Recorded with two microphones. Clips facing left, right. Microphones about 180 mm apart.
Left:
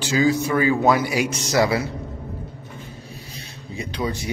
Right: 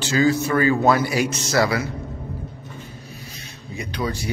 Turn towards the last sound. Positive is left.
turn(degrees=20)  # may be behind; listen again after turning